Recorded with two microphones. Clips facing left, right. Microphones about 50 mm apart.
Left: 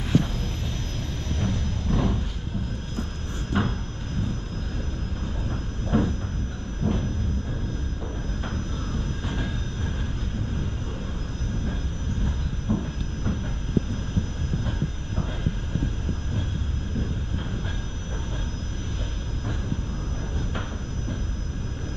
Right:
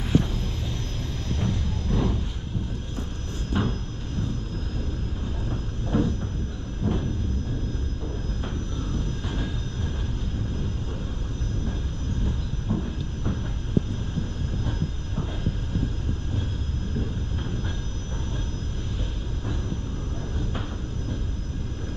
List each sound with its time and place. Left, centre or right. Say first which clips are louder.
1.4 s music: left 1 dB; centre
3.6 s a sound: left 1 dB; centre
5.5 s train: left 2 dB; centre
6.8 s vehicle: left 1 dB; centre
9.3 s vehicle: left 1 dB; centre
12.7 s train: left 2 dB; centre